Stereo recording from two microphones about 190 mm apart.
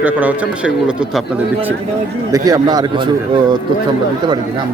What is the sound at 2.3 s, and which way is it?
A man's voice, 20° right (ahead or behind).